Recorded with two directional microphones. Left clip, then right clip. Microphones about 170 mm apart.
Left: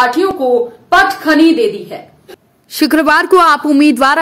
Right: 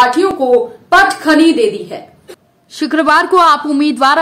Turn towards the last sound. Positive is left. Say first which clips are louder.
# left 2 dB
turn(degrees=20)  # may be behind; listen again after turning